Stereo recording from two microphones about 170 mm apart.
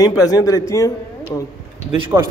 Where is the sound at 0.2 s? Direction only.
20° left (ahead or behind).